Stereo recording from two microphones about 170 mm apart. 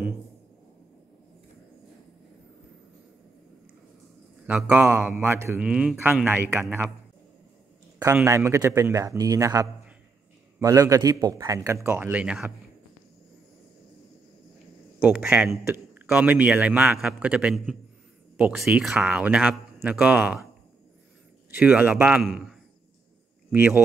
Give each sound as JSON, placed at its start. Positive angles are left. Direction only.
{"t": 4.5, "sound": "a man's voice", "side_deg": -10}
{"t": 8.0, "sound": "a man's voice", "side_deg": -15}
{"t": 15.0, "sound": "a man's voice", "side_deg": -5}
{"t": 21.5, "sound": "a man's voice", "side_deg": -10}